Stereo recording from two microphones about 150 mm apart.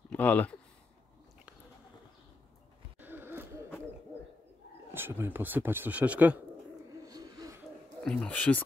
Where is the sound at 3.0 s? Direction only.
15° right (ahead or behind).